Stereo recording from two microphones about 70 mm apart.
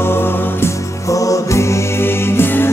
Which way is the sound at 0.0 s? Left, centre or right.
Left.